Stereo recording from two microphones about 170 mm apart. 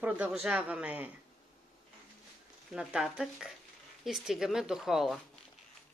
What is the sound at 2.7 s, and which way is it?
Speech, 5° right (ahead or behind).